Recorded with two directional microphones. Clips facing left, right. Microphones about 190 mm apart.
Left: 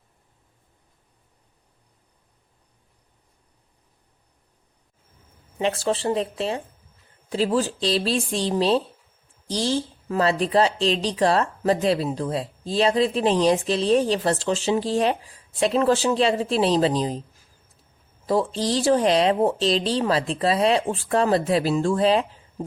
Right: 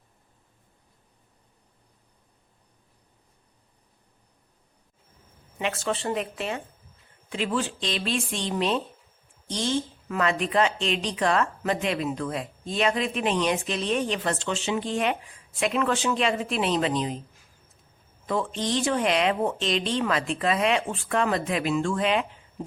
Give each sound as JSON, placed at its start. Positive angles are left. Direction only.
{"t": 5.5, "sound": "a woman's voice", "side_deg": 35}
{"t": 18.3, "sound": "a woman's voice", "side_deg": 35}